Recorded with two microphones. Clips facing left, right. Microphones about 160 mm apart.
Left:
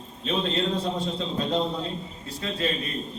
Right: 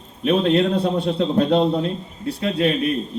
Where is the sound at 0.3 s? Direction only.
65° right (ahead or behind).